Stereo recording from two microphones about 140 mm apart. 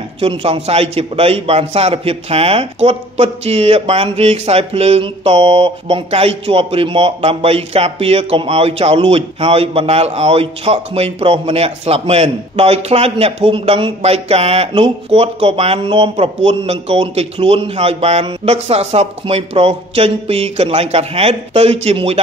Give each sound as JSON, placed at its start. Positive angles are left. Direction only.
{"t": 0.2, "sound": "a man's voice", "side_deg": -40}